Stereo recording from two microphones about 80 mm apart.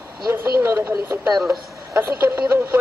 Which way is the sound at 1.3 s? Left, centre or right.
Centre.